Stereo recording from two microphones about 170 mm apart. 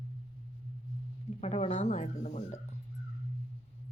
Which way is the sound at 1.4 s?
40° left (ahead or behind).